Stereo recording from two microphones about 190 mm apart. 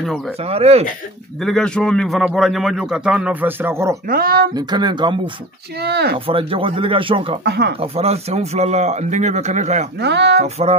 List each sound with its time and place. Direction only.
0.4 s speech: 30° right (ahead or behind)
1.4 s a man's voice: 5° left (ahead or behind); by 4.0 s 15° right (ahead or behind)
4.1 s speech: 50° right (ahead or behind)
4.6 s speech: 20° right (ahead or behind)
5.8 s speech: 60° right (ahead or behind)
6.1 s speech: 30° right (ahead or behind)
7.4 s speech: 60° right (ahead or behind)
7.8 s speech: 30° right (ahead or behind)
9.9 s speech: 65° right (ahead or behind)
10.4 s speech: 35° right (ahead or behind)